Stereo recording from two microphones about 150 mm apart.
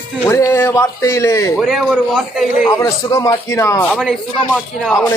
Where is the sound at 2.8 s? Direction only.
25° left (ahead or behind).